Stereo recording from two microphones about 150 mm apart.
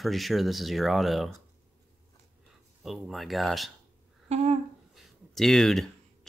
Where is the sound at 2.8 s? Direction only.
Centre (ahead or behind).